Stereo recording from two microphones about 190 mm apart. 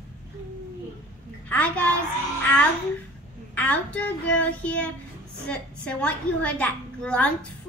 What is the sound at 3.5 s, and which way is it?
A child's voice, 10° left (ahead or behind).